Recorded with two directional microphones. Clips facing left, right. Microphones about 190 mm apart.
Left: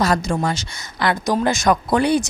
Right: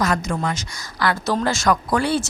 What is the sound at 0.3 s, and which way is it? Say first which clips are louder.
Speech: left 3 dB; 30° left (ahead or behind).